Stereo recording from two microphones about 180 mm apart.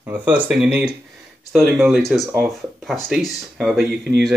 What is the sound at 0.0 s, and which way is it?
Speech, 10° right (ahead or behind).